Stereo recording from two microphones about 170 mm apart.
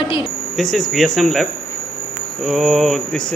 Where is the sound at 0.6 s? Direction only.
Centre (ahead or behind).